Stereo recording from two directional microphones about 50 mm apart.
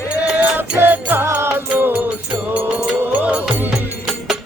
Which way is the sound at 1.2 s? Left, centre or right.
Right.